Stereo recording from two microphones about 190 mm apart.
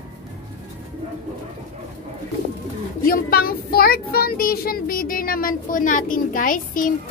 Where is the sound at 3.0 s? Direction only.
50° left (ahead or behind).